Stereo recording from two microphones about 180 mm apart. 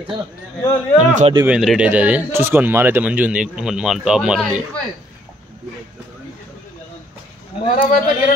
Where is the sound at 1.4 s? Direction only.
5° right (ahead or behind).